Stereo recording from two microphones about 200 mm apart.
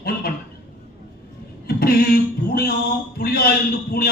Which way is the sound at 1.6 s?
50° left (ahead or behind).